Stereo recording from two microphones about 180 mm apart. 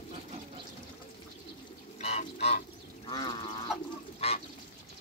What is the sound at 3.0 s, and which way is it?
Livestock, 25° left (ahead or behind).